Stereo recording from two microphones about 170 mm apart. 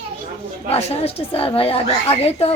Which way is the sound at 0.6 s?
35° left (ahead or behind).